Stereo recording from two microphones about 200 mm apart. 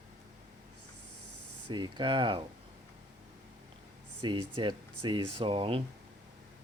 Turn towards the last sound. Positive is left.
turn(degrees=-25)  # may be behind; listen again after turning